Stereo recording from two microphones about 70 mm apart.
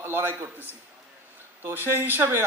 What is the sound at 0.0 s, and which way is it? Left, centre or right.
Speech, right.